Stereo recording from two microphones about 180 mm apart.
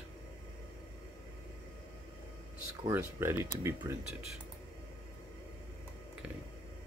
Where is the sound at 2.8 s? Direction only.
15° right (ahead or behind).